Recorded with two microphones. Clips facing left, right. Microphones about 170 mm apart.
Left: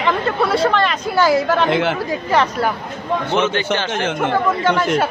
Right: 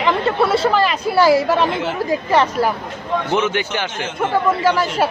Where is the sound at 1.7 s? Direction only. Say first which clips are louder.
Left 5 dB; 70° left (ahead or behind).